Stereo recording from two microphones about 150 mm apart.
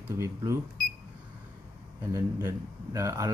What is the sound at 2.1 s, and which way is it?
Speech, 20° right (ahead or behind).